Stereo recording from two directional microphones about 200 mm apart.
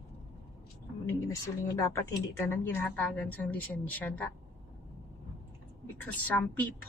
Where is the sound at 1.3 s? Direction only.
15° left (ahead or behind).